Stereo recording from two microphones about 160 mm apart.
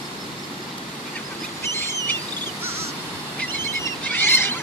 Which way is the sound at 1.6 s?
15° left (ahead or behind).